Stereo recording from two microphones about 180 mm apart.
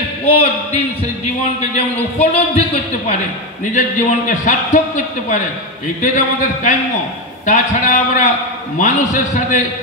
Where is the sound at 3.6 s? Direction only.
45° left (ahead or behind).